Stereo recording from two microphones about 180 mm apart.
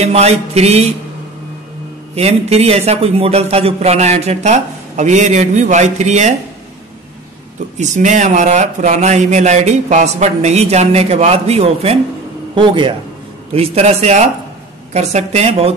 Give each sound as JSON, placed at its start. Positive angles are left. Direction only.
{"t": 0.0, "sound": "speech", "side_deg": -35}
{"t": 2.1, "sound": "speech", "side_deg": -35}
{"t": 7.7, "sound": "a man's voice", "side_deg": -40}